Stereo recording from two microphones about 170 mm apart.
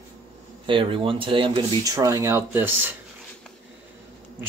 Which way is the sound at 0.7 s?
30° right (ahead or behind).